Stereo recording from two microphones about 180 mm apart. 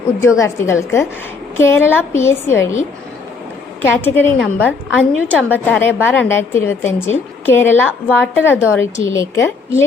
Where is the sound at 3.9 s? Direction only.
10° left (ahead or behind).